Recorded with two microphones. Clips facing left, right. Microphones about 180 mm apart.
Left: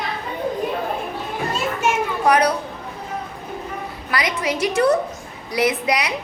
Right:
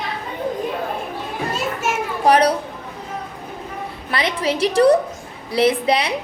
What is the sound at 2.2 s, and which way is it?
Speech, 30° right (ahead or behind).